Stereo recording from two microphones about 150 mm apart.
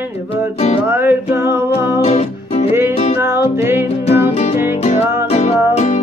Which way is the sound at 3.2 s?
15° right (ahead or behind).